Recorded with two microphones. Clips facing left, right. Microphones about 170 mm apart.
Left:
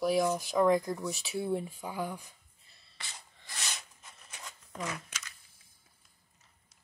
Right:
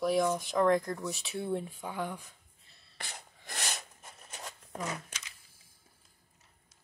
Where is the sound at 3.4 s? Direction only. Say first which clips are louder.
Right 4 dB; 55° right (ahead or behind).